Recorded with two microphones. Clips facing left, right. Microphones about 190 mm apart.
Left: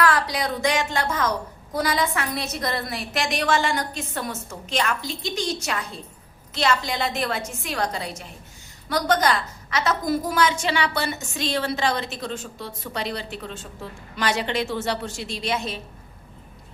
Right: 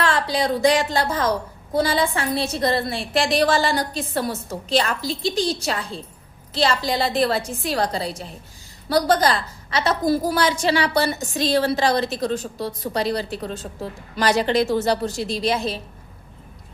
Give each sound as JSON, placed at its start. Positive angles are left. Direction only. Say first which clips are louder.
{"t": 0.0, "sound": "a woman's voice", "louder": "right 1 dB", "side_deg": -25}